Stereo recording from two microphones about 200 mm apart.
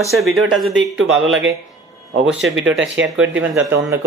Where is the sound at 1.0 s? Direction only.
70° right (ahead or behind).